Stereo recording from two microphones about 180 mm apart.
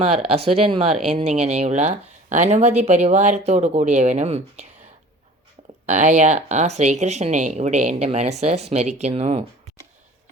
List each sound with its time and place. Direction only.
0.2 s speech: 35° right (ahead or behind)
5.8 s speech: 40° right (ahead or behind)